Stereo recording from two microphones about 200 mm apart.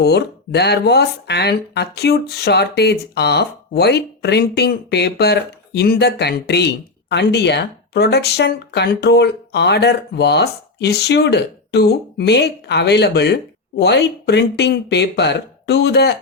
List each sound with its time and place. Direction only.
0.0 s speech: 55° left (ahead or behind)